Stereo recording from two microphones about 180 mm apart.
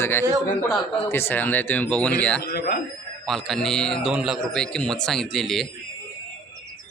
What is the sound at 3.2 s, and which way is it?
A man's voice, centre (ahead or behind).